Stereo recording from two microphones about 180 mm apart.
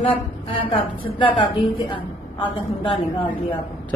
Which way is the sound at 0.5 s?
30° left (ahead or behind).